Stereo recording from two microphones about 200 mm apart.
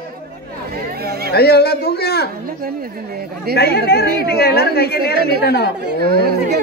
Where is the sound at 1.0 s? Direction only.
50° right (ahead or behind).